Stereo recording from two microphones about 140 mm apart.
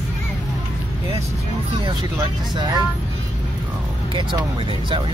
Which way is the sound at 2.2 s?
25° right (ahead or behind).